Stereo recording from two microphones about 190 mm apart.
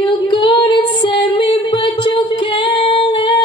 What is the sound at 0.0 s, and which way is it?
Female singing, 25° left (ahead or behind).